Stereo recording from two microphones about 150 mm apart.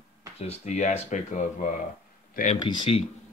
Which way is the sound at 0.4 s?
50° left (ahead or behind).